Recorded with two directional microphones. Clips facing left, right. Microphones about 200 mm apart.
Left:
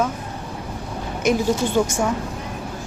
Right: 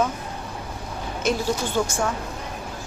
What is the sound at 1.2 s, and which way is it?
Speech, 15° left (ahead or behind).